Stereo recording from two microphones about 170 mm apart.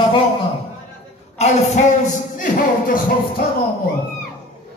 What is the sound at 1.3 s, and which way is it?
Speech, 40° left (ahead or behind).